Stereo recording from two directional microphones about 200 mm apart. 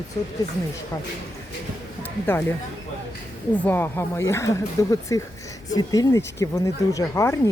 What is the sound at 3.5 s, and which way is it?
Speech, 10° left (ahead or behind).